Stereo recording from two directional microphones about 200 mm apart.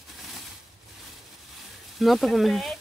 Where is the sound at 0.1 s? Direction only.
Centre (ahead or behind).